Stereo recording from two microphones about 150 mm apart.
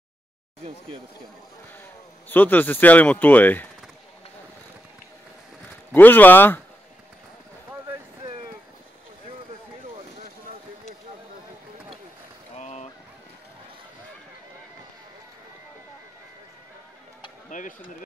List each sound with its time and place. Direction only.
2.2 s speech: 10° left (ahead or behind)
5.9 s speech: 10° left (ahead or behind)
12.5 s vehicle: 50° left (ahead or behind)
17.5 s a sound: 60° left (ahead or behind)